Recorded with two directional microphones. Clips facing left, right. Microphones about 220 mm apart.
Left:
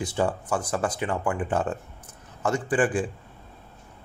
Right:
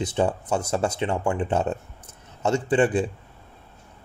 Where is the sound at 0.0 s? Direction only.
20° right (ahead or behind).